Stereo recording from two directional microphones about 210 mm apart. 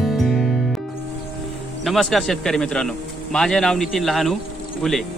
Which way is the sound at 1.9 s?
Centre (ahead or behind).